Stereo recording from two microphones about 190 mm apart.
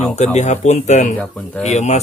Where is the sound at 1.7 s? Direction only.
35° left (ahead or behind).